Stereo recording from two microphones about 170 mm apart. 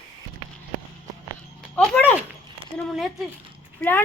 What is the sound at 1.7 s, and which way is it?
Speech, 10° left (ahead or behind).